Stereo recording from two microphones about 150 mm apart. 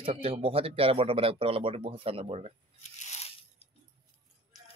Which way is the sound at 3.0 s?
50° left (ahead or behind).